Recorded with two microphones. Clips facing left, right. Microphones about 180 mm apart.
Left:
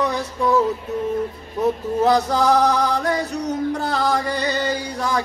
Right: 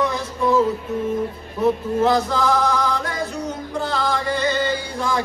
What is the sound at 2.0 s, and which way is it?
Chant, 40° left (ahead or behind).